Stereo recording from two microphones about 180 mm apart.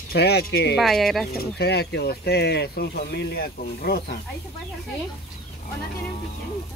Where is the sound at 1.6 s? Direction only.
65° left (ahead or behind).